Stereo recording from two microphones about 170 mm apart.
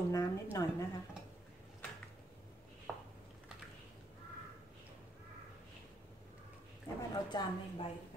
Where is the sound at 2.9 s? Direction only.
5° right (ahead or behind).